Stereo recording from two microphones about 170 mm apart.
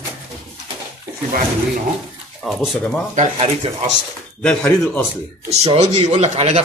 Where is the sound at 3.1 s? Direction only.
45° right (ahead or behind).